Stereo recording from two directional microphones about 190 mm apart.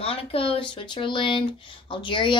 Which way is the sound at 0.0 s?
30° left (ahead or behind).